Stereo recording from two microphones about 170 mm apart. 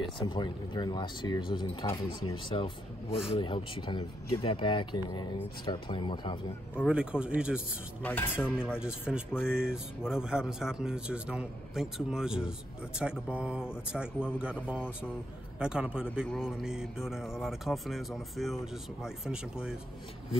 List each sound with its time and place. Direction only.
0.2 s speech: 25° left (ahead or behind)
6.9 s a man's voice: 5° right (ahead or behind)
8.0 s speech: 10° left (ahead or behind)
8.7 s a man's voice: 5° right (ahead or behind)